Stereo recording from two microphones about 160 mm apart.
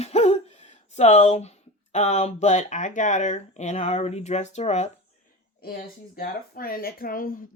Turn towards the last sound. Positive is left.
turn(degrees=60)  # may be behind; listen again after turning